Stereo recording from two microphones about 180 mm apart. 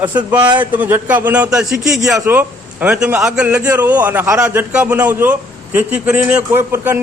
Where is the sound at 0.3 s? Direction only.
25° right (ahead or behind).